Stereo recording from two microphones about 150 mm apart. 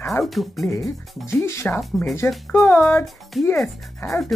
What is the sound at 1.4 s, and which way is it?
Speech, 15° left (ahead or behind).